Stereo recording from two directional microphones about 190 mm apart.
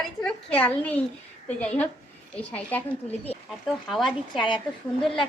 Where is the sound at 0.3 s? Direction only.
5° left (ahead or behind).